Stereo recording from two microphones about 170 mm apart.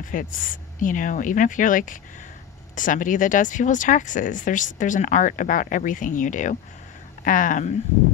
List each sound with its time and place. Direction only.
0.0 s speech: 50° left (ahead or behind)